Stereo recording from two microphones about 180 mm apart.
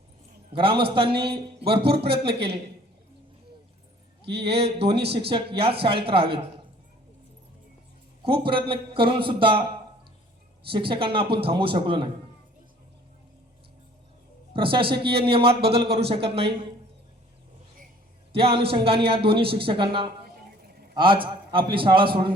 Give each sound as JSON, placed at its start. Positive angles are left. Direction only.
{"t": 0.5, "sound": "a man's voice", "side_deg": -30}
{"t": 2.0, "sound": "speech", "side_deg": -65}
{"t": 4.4, "sound": "a man's voice", "side_deg": -35}
{"t": 8.2, "sound": "a man's voice", "side_deg": -30}
{"t": 10.7, "sound": "a man's voice", "side_deg": -30}
{"t": 14.5, "sound": "speech", "side_deg": -30}
{"t": 18.3, "sound": "a man's voice", "side_deg": -30}